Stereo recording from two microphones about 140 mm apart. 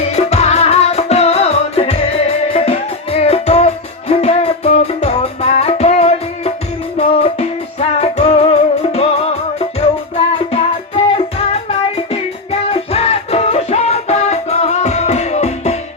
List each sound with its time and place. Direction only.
0.0 s music: 50° left (ahead or behind)